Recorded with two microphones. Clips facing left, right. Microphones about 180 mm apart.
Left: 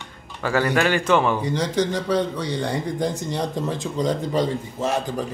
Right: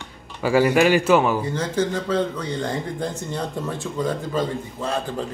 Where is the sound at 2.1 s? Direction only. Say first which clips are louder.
Left 1 dB; 75° left (ahead or behind).